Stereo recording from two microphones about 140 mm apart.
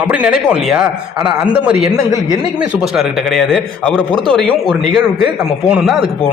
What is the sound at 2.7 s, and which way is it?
A man's voice, centre (ahead or behind).